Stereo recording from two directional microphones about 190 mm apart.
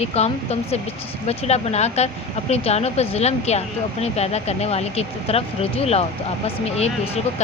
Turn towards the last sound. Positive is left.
turn(degrees=35)  # may be behind; listen again after turning